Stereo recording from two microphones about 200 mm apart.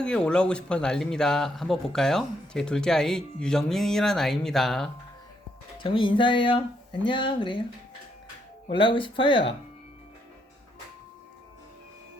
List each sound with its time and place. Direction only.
0.0 s a man's voice: 5° left (ahead or behind)
5.8 s speech: 25° left (ahead or behind)
8.7 s speech: 25° left (ahead or behind)